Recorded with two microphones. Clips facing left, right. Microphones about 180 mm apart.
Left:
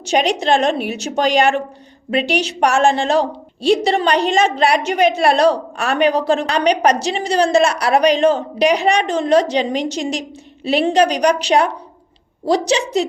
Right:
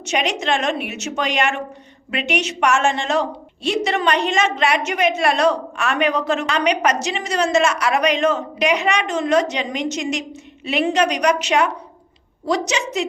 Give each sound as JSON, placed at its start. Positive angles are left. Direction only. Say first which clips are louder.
{"t": 0.0, "sound": "a woman's voice", "louder": "left 5 dB", "side_deg": 35}